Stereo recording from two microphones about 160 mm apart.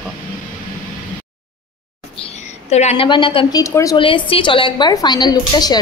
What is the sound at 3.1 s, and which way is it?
Speech, 30° left (ahead or behind).